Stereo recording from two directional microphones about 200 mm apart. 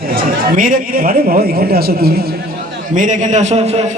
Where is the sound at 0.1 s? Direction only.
45° right (ahead or behind).